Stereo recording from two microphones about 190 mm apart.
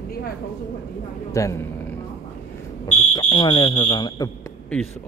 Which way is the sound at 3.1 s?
25° left (ahead or behind).